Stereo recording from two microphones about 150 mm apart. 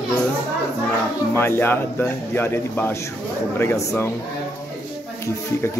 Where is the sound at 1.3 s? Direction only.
15° left (ahead or behind).